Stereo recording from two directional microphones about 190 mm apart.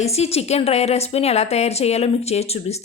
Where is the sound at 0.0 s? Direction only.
35° left (ahead or behind).